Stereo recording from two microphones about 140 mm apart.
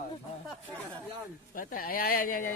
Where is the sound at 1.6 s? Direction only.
90° left.